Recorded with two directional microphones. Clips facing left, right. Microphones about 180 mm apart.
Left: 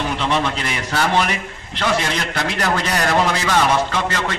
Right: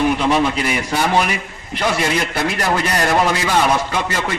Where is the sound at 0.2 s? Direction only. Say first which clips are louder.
Right 4 dB; 10° right (ahead or behind).